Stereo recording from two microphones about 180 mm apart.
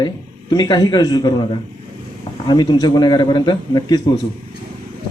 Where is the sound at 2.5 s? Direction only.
25° left (ahead or behind).